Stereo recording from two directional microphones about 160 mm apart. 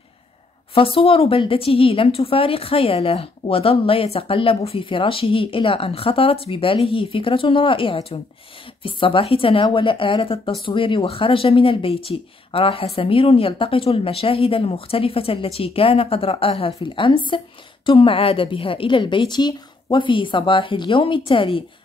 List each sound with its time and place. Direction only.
0.7 s a woman's voice: 35° left (ahead or behind)